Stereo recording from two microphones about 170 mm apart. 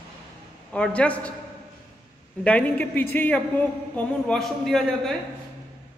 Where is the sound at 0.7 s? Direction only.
5° left (ahead or behind).